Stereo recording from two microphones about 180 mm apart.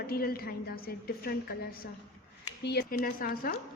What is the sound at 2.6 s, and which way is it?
Speech, 55° left (ahead or behind).